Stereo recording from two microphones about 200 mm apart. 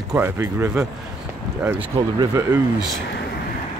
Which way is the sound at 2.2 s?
15° right (ahead or behind).